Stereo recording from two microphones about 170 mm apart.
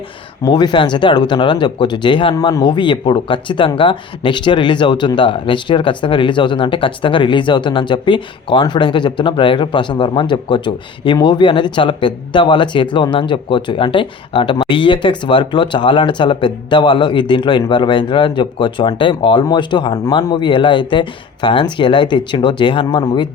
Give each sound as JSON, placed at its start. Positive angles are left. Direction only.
{"t": 0.4, "sound": "speech", "side_deg": 25}